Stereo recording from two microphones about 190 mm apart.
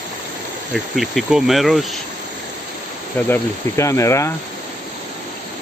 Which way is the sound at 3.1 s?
10° left (ahead or behind).